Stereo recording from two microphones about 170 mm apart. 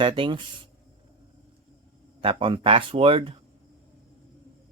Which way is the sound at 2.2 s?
30° right (ahead or behind).